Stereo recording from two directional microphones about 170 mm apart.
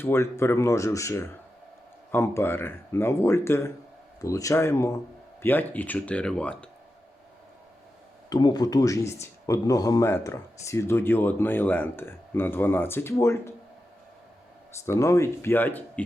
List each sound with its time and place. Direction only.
0.0 s speech: 15° left (ahead or behind)
8.3 s speech: 25° left (ahead or behind)
14.8 s speech: 15° left (ahead or behind)